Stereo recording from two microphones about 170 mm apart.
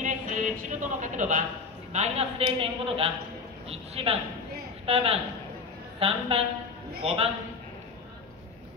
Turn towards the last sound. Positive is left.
turn(degrees=-35)  # may be behind; listen again after turning